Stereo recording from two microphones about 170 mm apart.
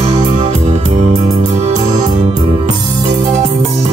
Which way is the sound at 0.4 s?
40° right (ahead or behind).